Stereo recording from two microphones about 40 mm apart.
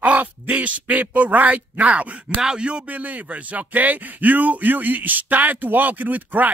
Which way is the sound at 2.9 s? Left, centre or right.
Right.